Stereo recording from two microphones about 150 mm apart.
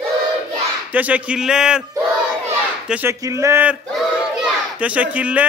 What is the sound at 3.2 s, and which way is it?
Speech, 20° right (ahead or behind).